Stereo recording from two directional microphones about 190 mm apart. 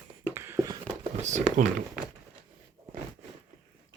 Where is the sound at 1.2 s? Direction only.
40° right (ahead or behind).